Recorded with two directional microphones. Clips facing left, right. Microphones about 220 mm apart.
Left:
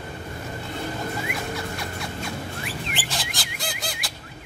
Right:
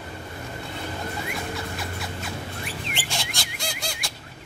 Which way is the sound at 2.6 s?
Centre (ahead or behind).